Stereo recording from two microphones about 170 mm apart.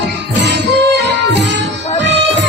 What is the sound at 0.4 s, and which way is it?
Music, 90° right.